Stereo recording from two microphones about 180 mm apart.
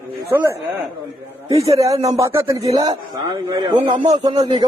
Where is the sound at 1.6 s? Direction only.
20° right (ahead or behind).